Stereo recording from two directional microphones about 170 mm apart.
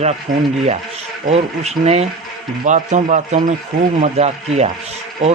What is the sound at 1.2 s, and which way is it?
A man's voice, 40° right (ahead or behind).